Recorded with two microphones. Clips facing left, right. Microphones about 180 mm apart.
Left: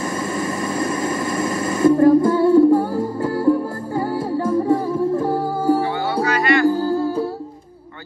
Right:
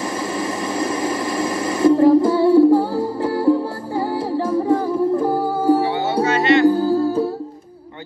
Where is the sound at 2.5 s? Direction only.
5° right (ahead or behind).